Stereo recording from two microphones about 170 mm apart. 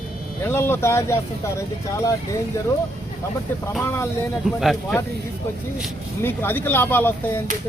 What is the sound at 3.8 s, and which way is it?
Speech, 15° left (ahead or behind).